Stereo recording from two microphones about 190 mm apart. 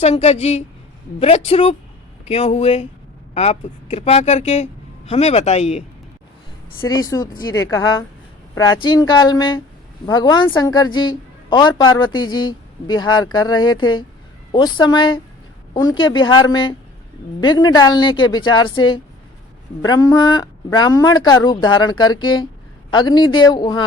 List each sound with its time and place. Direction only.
0.0 s speech: 35° left (ahead or behind)
6.8 s a woman's voice: 20° left (ahead or behind)